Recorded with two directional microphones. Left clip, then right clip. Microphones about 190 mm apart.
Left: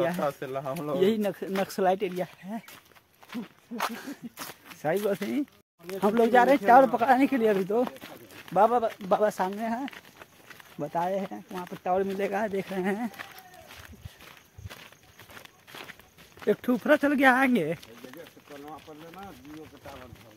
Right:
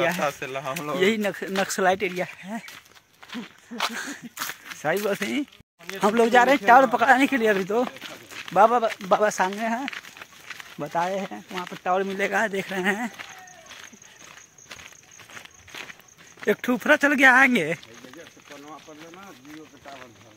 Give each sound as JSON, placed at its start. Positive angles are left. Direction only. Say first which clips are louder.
{"t": 0.0, "sound": "speech", "louder": "right 4 dB", "side_deg": 5}
{"t": 0.4, "sound": "speech", "louder": "right 2 dB", "side_deg": 20}
{"t": 0.9, "sound": "speech", "louder": "right 3 dB", "side_deg": -10}
{"t": 2.1, "sound": "speech", "louder": "right 4 dB", "side_deg": -25}
{"t": 3.3, "sound": "a sound", "louder": "right 3 dB", "side_deg": -10}
{"t": 4.8, "sound": "speech", "louder": "right 3 dB", "side_deg": -5}
{"t": 8.5, "sound": "speech", "louder": "right 4 dB", "side_deg": -25}
{"t": 11.7, "sound": "speech", "louder": "right 3 dB", "side_deg": -10}
{"t": 16.4, "sound": "speech", "louder": "right 3 dB", "side_deg": 0}